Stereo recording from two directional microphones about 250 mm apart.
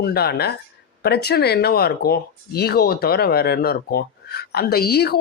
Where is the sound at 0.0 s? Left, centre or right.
Left.